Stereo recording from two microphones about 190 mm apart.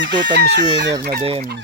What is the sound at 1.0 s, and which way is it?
Speech, 50° right (ahead or behind).